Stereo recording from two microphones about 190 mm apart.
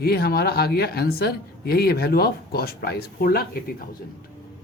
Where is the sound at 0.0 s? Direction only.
55° left (ahead or behind).